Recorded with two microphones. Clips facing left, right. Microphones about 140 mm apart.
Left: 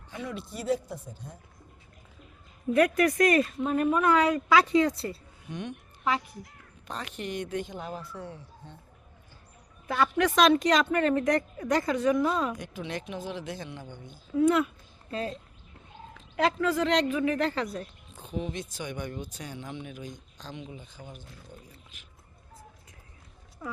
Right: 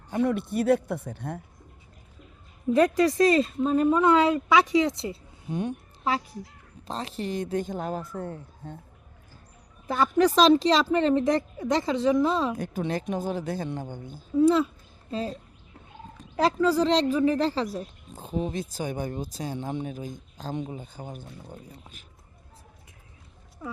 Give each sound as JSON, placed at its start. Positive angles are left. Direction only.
{"t": 0.1, "sound": "a man's voice", "side_deg": -55}
{"t": 3.3, "sound": "speech", "side_deg": -25}
{"t": 5.5, "sound": "speech", "side_deg": -35}
{"t": 9.8, "sound": "speech", "side_deg": -35}
{"t": 14.3, "sound": "speech", "side_deg": -30}
{"t": 16.4, "sound": "speech", "side_deg": -35}